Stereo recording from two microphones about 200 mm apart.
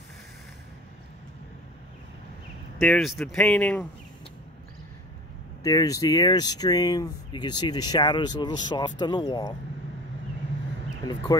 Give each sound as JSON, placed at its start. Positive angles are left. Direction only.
{"t": 2.8, "sound": "speech", "side_deg": 0}
{"t": 5.6, "sound": "speech", "side_deg": 20}